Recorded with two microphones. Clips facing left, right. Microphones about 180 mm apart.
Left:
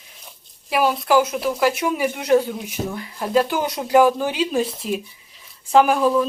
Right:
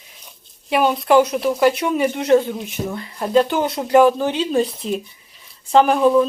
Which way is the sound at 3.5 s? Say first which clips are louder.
Right 3 dB; 25° right (ahead or behind).